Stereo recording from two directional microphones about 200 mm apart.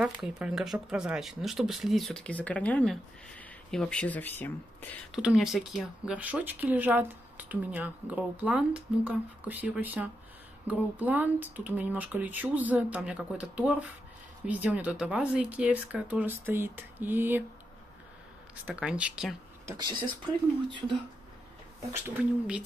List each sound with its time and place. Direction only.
0.0 s speech: centre (ahead or behind)
5.1 s speech: centre (ahead or behind)
18.7 s speech: 5° right (ahead or behind)
19.6 s speech: 20° right (ahead or behind)
21.9 s speech: 5° right (ahead or behind)